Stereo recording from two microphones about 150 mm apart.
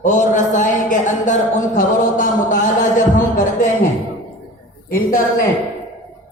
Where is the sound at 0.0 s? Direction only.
55° left (ahead or behind).